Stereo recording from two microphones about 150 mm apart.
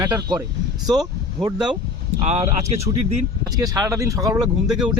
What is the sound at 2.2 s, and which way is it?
Speech, 45° right (ahead or behind).